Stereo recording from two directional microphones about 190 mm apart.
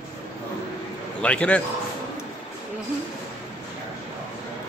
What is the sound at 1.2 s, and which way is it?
Speech, 5° left (ahead or behind).